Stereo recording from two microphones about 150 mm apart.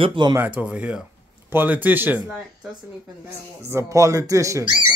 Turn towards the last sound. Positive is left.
turn(degrees=-20)  # may be behind; listen again after turning